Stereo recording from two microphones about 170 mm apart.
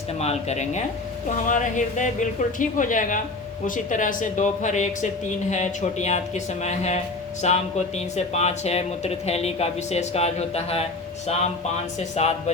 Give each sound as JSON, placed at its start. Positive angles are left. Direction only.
{"t": 0.2, "sound": "a woman's voice", "side_deg": 40}